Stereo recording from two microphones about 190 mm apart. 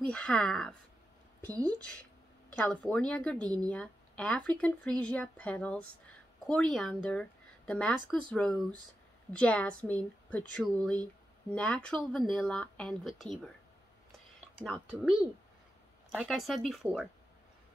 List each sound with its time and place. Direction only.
0.0 s speech: 5° left (ahead or behind)
2.5 s a woman's voice: 5° left (ahead or behind)
14.6 s speech: 5° left (ahead or behind)